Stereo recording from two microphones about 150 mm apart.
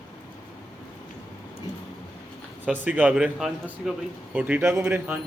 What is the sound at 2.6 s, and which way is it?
Speech, 10° right (ahead or behind).